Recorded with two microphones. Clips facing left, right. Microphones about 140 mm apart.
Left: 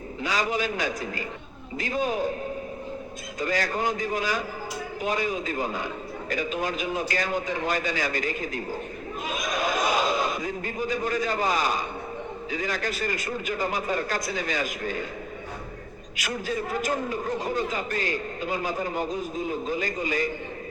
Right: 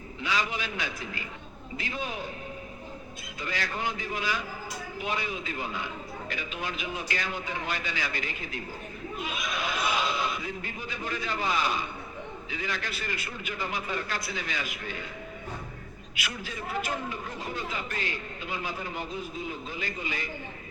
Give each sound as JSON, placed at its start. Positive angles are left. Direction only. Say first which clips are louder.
{"t": 0.2, "sound": "a man's voice", "louder": "left 5 dB", "side_deg": 40}
{"t": 3.4, "sound": "a man's voice", "louder": "left 6 dB", "side_deg": 40}
{"t": 9.2, "sound": "a sound", "louder": "left 6 dB", "side_deg": 40}
{"t": 12.5, "sound": "a man's voice", "louder": "left 6 dB", "side_deg": 40}
{"t": 16.1, "sound": "a man's voice", "louder": "left 8 dB", "side_deg": 40}